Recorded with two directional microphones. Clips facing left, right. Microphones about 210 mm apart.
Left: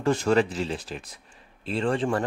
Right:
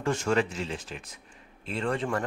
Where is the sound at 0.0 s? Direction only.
35° left (ahead or behind).